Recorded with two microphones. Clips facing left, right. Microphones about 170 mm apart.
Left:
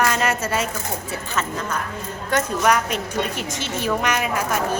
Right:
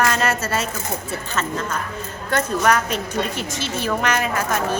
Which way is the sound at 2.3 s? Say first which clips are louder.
Right 1 dB; 15° left (ahead or behind).